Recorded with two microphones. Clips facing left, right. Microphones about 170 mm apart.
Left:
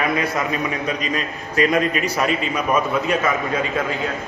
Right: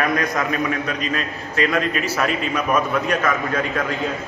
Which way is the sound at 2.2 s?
10° left (ahead or behind).